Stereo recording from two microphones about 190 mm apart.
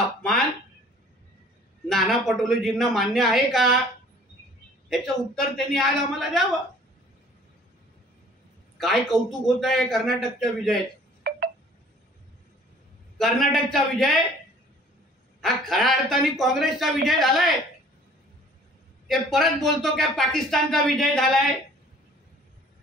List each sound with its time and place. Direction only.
0.2 s a sound: 5° left (ahead or behind)
1.9 s speech: centre (ahead or behind)
4.8 s speech: centre (ahead or behind)
8.7 s speech: centre (ahead or behind)
11.3 s wind chime: 55° right (ahead or behind)
13.2 s speech: centre (ahead or behind)
15.4 s speech: centre (ahead or behind)
19.0 s speech: centre (ahead or behind)